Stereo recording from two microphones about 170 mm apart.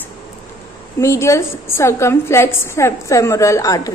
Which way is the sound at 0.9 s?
15° left (ahead or behind).